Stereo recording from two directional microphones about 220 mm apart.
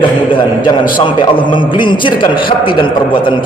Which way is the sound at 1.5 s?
20° left (ahead or behind).